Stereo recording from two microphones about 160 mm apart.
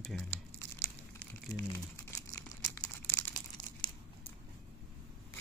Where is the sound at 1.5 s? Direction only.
20° left (ahead or behind).